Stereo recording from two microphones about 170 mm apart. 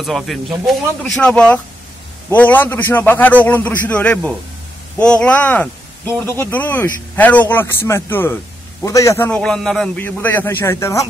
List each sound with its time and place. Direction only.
0.0 s a man's voice: centre (ahead or behind); by 9.3 s 15° left (ahead or behind)
9.3 s speech: 5° left (ahead or behind)